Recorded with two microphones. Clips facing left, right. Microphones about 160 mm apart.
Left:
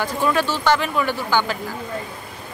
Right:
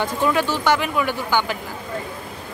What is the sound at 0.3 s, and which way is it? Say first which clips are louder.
Speech: left 1 dB; 15° right (ahead or behind).